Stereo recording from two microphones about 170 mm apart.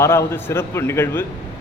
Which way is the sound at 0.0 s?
15° left (ahead or behind).